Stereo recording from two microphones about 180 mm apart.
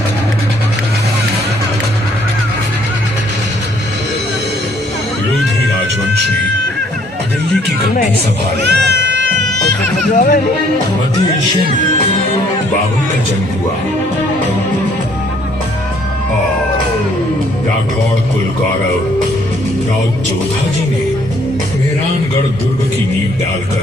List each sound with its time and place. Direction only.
8.6 s cat: 70° right (ahead or behind)
10.2 s speech: 50° left (ahead or behind)